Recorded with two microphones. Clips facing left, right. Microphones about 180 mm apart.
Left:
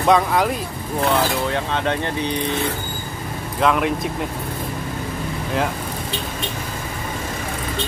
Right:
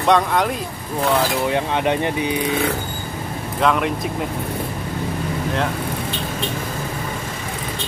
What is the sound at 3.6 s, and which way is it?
Speech, centre (ahead or behind).